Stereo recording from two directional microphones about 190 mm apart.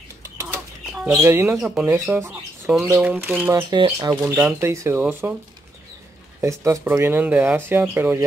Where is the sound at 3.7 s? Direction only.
20° right (ahead or behind).